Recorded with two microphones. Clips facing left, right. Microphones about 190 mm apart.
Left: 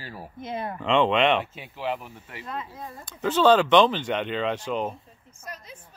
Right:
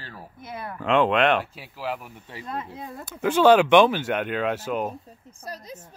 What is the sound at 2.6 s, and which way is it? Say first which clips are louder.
Speech: right 2 dB; 60° right (ahead or behind).